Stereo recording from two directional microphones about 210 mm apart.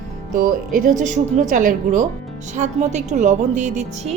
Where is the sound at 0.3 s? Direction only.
40° right (ahead or behind).